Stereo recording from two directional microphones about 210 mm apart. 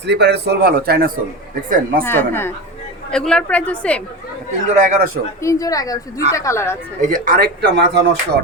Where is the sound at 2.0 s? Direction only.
10° left (ahead or behind).